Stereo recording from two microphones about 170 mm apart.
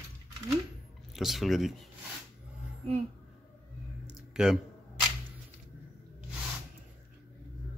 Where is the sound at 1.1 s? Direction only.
Centre (ahead or behind).